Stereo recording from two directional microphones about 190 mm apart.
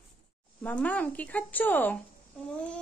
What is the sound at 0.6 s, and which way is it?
A woman's voice, 10° left (ahead or behind).